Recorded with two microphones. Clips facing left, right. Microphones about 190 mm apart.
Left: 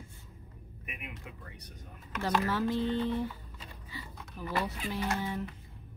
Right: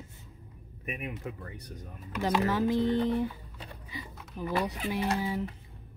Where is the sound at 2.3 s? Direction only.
15° right (ahead or behind).